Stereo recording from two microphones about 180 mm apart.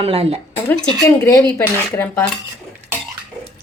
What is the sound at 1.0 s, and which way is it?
Speech, 10° left (ahead or behind).